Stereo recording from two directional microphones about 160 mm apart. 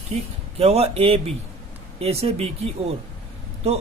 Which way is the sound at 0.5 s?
40° right (ahead or behind).